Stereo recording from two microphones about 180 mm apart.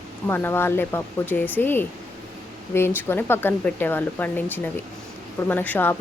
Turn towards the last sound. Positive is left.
turn(degrees=10)  # may be behind; listen again after turning